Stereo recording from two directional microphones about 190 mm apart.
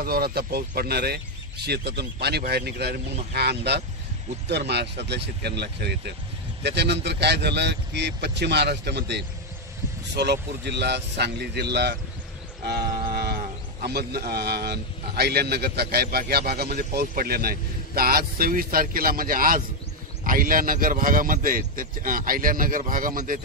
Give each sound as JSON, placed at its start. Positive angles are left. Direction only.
{"t": 0.0, "sound": "a man's voice", "side_deg": -55}
{"t": 13.0, "sound": "a sound", "side_deg": -55}
{"t": 13.8, "sound": "a man's voice", "side_deg": -55}